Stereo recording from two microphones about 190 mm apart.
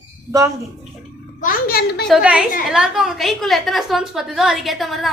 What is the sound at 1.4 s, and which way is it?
Speech, 55° left (ahead or behind).